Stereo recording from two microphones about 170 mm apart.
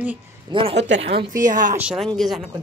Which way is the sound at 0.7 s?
90° right.